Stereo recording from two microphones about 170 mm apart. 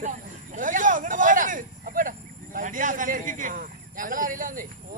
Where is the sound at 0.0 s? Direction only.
45° right (ahead or behind).